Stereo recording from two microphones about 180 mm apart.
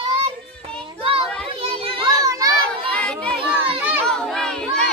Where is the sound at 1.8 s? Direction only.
25° right (ahead or behind).